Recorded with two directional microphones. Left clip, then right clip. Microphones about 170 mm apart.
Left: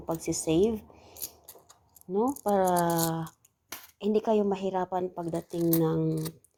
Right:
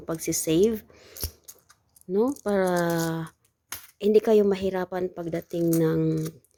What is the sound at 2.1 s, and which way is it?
Speech, 40° right (ahead or behind).